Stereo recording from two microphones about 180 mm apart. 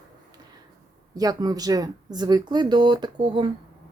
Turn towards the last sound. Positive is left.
turn(degrees=-25)  # may be behind; listen again after turning